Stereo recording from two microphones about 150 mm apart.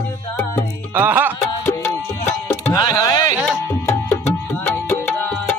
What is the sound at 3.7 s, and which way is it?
Music, 20° left (ahead or behind).